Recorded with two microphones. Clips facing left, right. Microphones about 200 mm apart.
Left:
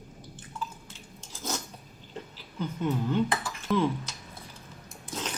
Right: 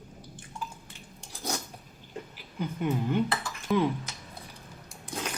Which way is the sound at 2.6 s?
15° right (ahead or behind).